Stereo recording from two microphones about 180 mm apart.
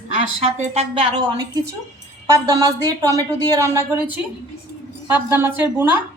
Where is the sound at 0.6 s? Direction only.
35° right (ahead or behind).